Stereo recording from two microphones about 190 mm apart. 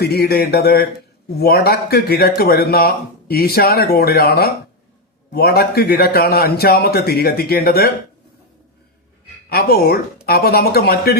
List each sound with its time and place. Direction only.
0.0 s a man's voice: 55° left (ahead or behind)
9.5 s speech: 55° left (ahead or behind)